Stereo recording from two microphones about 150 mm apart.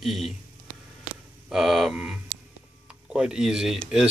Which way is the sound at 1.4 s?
Centre (ahead or behind).